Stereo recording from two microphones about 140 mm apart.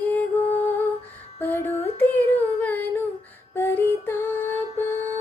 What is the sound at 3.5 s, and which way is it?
Music, 15° left (ahead or behind).